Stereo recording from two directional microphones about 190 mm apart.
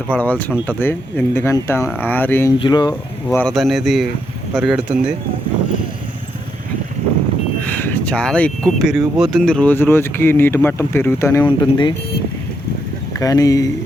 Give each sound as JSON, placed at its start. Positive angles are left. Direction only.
{"t": 0.1, "sound": "speech", "side_deg": 10}
{"t": 2.6, "sound": "speech", "side_deg": 25}
{"t": 3.2, "sound": "speech", "side_deg": 5}
{"t": 7.6, "sound": "speech", "side_deg": 10}
{"t": 11.4, "sound": "speech", "side_deg": 25}
{"t": 13.1, "sound": "speech", "side_deg": 20}